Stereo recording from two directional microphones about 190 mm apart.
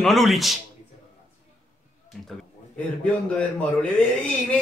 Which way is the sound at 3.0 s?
5° left (ahead or behind).